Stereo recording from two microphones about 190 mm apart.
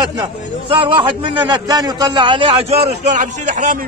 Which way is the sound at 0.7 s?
25° right (ahead or behind).